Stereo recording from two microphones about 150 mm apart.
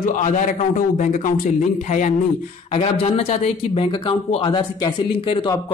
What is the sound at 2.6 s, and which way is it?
A man's voice, 40° left (ahead or behind).